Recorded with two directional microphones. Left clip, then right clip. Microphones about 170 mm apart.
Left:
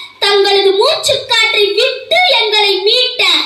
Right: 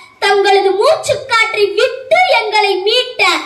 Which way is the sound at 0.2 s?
20° left (ahead or behind).